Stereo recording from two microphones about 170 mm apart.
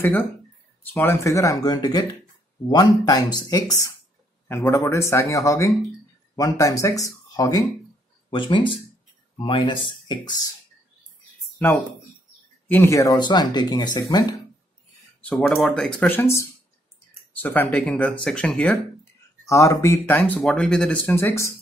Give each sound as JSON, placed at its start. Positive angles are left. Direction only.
{"t": 0.0, "sound": "speech", "side_deg": 10}
{"t": 11.5, "sound": "a sound", "side_deg": 10}
{"t": 12.6, "sound": "speech", "side_deg": 15}
{"t": 15.2, "sound": "speech", "side_deg": 5}
{"t": 19.4, "sound": "speech", "side_deg": 20}